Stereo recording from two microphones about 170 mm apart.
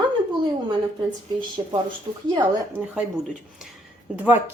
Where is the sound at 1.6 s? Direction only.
30° right (ahead or behind).